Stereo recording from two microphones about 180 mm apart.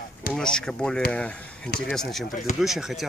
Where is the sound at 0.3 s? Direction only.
5° left (ahead or behind).